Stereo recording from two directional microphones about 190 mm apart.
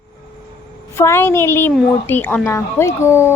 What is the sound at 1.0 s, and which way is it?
Speech, 15° left (ahead or behind).